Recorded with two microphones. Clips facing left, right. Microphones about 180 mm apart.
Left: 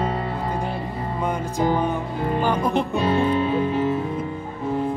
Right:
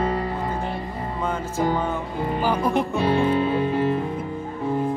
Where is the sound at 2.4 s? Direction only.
10° right (ahead or behind).